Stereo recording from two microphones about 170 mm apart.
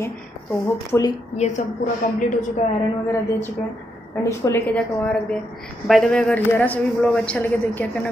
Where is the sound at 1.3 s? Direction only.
45° left (ahead or behind).